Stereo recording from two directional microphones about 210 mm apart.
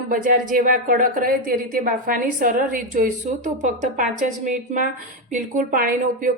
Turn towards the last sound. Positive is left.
turn(degrees=-40)  # may be behind; listen again after turning